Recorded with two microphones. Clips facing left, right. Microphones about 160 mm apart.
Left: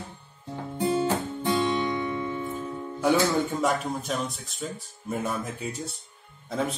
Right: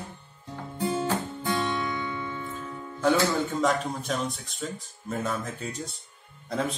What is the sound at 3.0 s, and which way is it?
Speech, 10° left (ahead or behind).